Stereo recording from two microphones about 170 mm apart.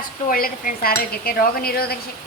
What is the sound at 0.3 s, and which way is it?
A woman's voice, 55° left (ahead or behind).